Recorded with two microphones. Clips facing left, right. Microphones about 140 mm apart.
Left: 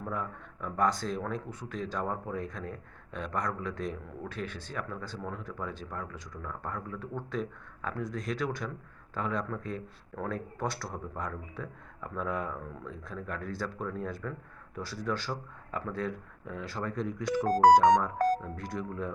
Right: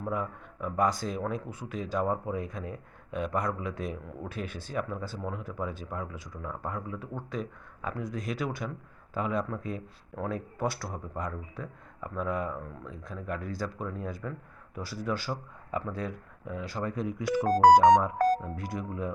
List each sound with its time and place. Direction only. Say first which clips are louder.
0.0 s a man's voice: right 3 dB; 10° right (ahead or behind)
17.4 s speech: right 2 dB; 90° right
18.5 s a man's voice: right 1 dB; 5° right (ahead or behind)